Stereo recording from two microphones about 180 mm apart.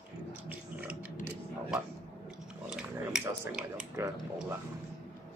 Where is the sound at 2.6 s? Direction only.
5° right (ahead or behind).